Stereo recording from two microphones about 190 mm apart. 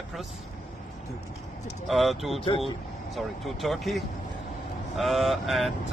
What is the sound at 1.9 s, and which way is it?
Speech, centre (ahead or behind).